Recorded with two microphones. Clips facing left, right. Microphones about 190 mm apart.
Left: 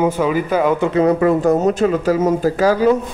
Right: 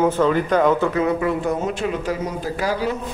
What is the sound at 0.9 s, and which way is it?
Speech, 40° left (ahead or behind).